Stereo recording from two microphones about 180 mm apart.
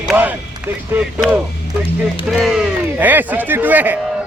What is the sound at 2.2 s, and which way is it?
Speech, centre (ahead or behind).